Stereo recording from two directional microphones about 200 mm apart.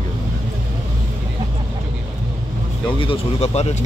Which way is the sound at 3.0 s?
30° left (ahead or behind).